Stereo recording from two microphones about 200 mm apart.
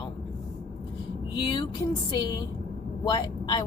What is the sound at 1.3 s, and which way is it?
A woman's voice, 25° left (ahead or behind).